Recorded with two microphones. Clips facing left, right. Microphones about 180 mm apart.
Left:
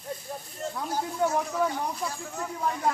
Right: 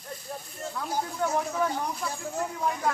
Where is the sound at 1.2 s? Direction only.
15° left (ahead or behind).